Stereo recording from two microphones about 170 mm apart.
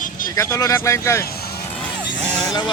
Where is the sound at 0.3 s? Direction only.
15° left (ahead or behind).